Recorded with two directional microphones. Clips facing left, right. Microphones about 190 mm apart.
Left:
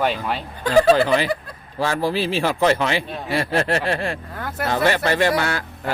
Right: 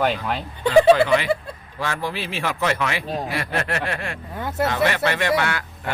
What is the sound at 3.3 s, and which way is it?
Speech, 30° left (ahead or behind).